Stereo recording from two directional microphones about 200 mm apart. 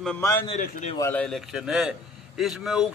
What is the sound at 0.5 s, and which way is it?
Speech, 40° left (ahead or behind).